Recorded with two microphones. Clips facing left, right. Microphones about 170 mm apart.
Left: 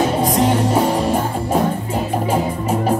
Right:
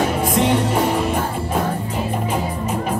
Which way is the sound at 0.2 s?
35° left (ahead or behind).